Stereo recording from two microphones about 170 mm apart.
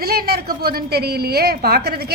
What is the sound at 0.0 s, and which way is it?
A woman's voice, 65° right (ahead or behind).